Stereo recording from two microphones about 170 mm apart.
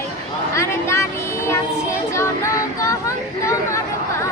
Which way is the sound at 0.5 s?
15° left (ahead or behind).